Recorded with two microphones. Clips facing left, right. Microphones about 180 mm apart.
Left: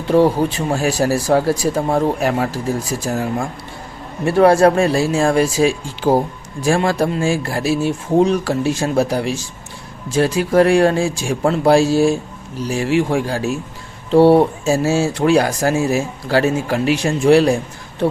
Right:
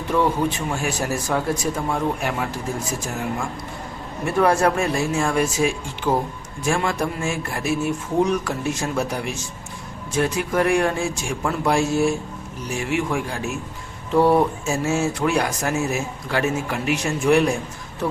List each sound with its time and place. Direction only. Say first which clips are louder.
0.1 s speech: left 7 dB; 35° left (ahead or behind)